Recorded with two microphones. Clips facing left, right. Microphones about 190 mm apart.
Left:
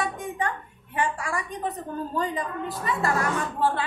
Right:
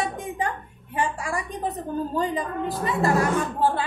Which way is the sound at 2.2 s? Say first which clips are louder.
Even; 35° right (ahead or behind).